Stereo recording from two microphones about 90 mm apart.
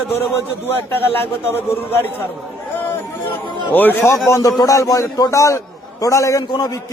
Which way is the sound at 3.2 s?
20° left (ahead or behind).